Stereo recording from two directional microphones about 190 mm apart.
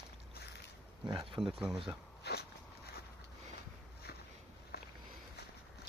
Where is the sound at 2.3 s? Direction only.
60° left (ahead or behind).